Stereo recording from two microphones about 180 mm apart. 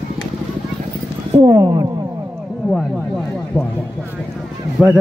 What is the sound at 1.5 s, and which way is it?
Speech, 20° right (ahead or behind).